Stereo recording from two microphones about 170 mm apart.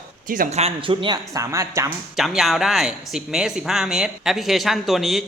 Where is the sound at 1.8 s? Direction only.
Centre (ahead or behind).